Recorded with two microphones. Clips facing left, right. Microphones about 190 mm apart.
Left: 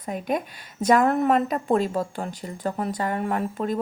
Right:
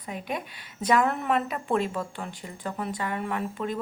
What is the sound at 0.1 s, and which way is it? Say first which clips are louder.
A woman's voice: left 7 dB; 45° left (ahead or behind).